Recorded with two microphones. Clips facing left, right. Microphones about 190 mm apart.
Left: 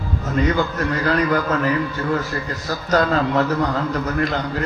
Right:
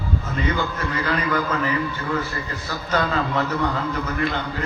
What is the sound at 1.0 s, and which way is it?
Speech, 40° left (ahead or behind).